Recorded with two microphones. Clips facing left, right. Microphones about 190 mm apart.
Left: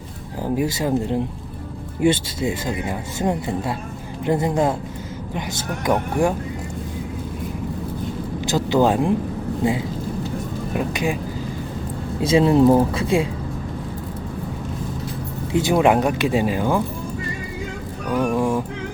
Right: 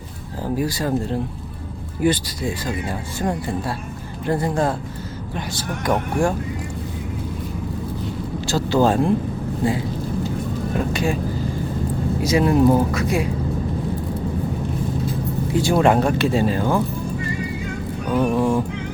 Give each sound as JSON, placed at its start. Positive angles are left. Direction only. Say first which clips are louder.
{"t": 0.4, "sound": "speech", "louder": "left 1 dB", "side_deg": 20}
{"t": 8.4, "sound": "speech", "louder": "even", "side_deg": 15}
{"t": 12.2, "sound": "speech", "louder": "left 2 dB", "side_deg": 25}
{"t": 15.5, "sound": "speech", "louder": "even", "side_deg": 20}
{"t": 18.1, "sound": "honk", "louder": "right 1 dB", "side_deg": -5}
{"t": 18.3, "sound": "speech", "louder": "right 1 dB", "side_deg": 10}